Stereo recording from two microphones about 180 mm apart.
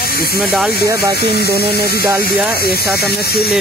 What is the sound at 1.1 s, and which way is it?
Speech, 65° left (ahead or behind).